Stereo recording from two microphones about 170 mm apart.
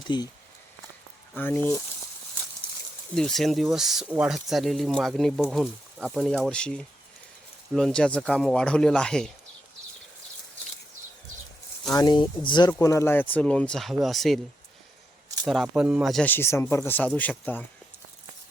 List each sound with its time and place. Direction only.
0.1 s speech: 25° left (ahead or behind)
1.4 s speech: 10° left (ahead or behind)
3.2 s speech: centre (ahead or behind)
11.9 s speech: 25° left (ahead or behind); by 14.3 s centre (ahead or behind)
15.4 s speech: centre (ahead or behind)
16.2 s speech: 15° left (ahead or behind)